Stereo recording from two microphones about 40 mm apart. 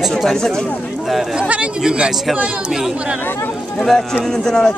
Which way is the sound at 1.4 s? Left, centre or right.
Right.